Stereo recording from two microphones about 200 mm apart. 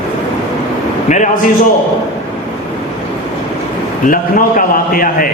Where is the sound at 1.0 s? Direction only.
35° left (ahead or behind).